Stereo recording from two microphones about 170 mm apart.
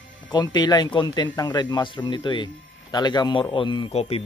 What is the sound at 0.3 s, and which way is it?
Speech, 25° left (ahead or behind).